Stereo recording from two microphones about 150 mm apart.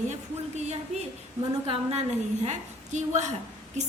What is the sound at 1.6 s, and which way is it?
Speech, 40° right (ahead or behind).